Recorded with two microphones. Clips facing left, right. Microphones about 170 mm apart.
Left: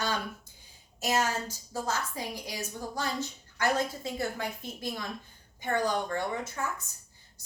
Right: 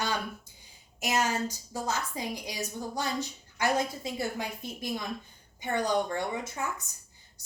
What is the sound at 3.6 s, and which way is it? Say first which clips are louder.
A woman's voice: even; 15° right (ahead or behind).